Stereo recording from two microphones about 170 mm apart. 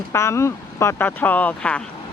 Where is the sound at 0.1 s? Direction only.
15° left (ahead or behind).